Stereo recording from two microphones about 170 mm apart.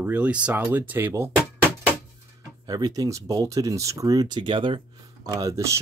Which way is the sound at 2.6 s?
20° right (ahead or behind).